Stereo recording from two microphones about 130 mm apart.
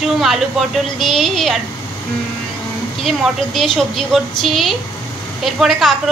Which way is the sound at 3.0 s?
Centre (ahead or behind).